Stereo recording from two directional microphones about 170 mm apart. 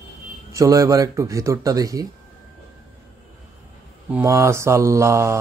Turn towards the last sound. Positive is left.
turn(degrees=-15)  # may be behind; listen again after turning